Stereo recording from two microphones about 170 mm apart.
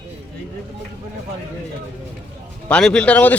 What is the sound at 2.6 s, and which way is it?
Speech, 5° left (ahead or behind).